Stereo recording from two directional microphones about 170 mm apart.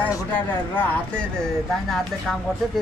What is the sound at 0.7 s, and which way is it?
Speech, 10° left (ahead or behind).